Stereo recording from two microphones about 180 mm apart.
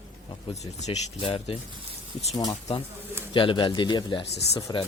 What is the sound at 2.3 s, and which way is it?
Speech, 20° left (ahead or behind).